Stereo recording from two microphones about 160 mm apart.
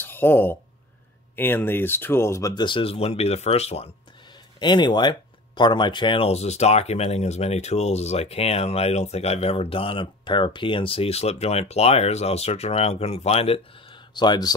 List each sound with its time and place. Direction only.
0.0 s speech: 15° left (ahead or behind); by 3.9 s 40° left (ahead or behind)
4.6 s speech: 30° left (ahead or behind)